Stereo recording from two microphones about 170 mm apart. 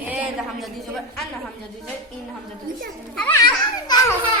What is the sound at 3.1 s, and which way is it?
Speech, 10° left (ahead or behind).